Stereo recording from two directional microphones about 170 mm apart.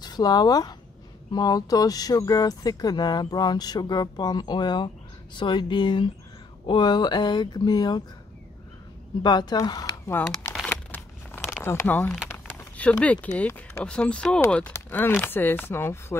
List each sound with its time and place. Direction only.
0.0 s speech: 25° left (ahead or behind)
9.2 s speech: 25° left (ahead or behind)
10.1 s speech: 10° left (ahead or behind)
10.7 s a sound: 10° left (ahead or behind)
11.6 s speech: 15° left (ahead or behind)